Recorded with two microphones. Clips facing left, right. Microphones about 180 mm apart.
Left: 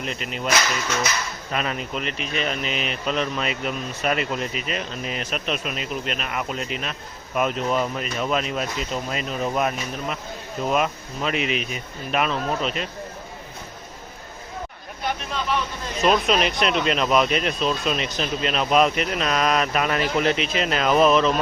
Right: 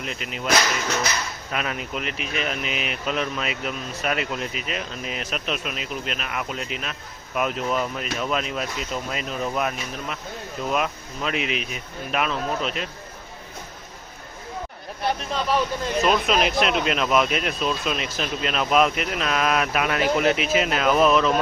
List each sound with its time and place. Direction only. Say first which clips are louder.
0.0 s speech: left 2 dB; centre (ahead or behind)
1.5 s speech: left 2 dB; 5° right (ahead or behind)
15.3 s speech: right 3 dB; 35° right (ahead or behind)
16.0 s speech: left 2 dB; centre (ahead or behind)